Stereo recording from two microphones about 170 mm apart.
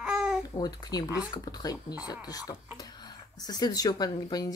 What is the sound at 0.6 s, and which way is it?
Speech, 20° left (ahead or behind).